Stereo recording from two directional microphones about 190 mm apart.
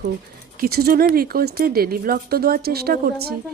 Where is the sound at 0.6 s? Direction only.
55° right (ahead or behind).